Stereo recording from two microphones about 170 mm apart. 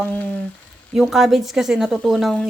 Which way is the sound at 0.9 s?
Centre (ahead or behind).